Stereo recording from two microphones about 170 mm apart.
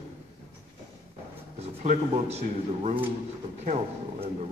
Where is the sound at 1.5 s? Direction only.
45° right (ahead or behind).